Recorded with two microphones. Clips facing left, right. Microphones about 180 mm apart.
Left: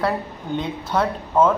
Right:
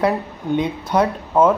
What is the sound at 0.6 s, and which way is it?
Speech, 15° right (ahead or behind).